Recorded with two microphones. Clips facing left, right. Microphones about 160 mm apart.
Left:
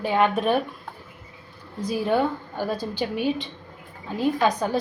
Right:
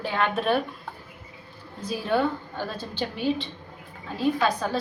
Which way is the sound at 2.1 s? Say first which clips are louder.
Right 1 dB; 10° left (ahead or behind).